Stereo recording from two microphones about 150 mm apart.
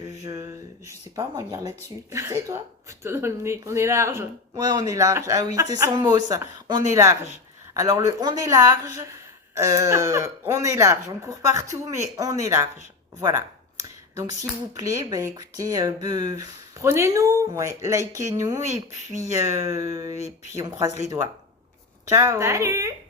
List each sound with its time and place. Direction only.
0.3 s speech: 20° right (ahead or behind)
14.8 s speech: 20° right (ahead or behind)
20.1 s speech: 45° left (ahead or behind)
20.5 s speech: 20° right (ahead or behind)
22.1 s speech: 20° right (ahead or behind)